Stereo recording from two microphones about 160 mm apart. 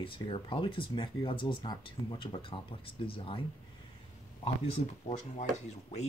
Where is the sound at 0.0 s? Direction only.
30° left (ahead or behind).